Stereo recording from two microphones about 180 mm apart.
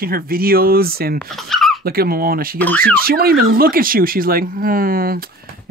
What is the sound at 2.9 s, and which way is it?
Speech, 55° right (ahead or behind).